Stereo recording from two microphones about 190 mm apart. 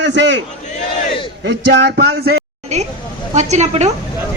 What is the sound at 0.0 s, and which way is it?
Speech, 70° right (ahead or behind).